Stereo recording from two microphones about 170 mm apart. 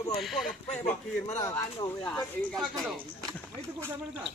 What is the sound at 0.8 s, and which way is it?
Speech, 40° left (ahead or behind).